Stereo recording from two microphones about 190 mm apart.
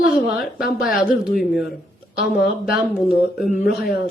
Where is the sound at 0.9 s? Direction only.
50° left (ahead or behind).